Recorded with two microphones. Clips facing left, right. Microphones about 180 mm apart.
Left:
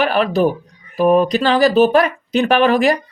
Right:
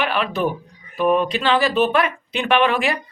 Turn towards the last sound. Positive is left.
turn(degrees=40)  # may be behind; listen again after turning